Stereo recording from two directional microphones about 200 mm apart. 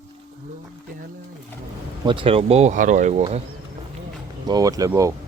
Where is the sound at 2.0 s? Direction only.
25° right (ahead or behind).